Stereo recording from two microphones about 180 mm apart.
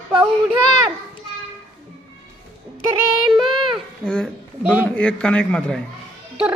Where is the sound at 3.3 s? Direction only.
Centre (ahead or behind).